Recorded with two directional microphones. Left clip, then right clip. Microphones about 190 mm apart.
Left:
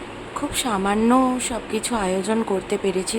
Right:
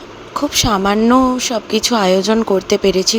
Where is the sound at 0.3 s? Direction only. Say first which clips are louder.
Right 9 dB; 30° right (ahead or behind).